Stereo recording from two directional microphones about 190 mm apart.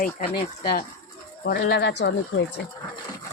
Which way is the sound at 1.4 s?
55° left (ahead or behind).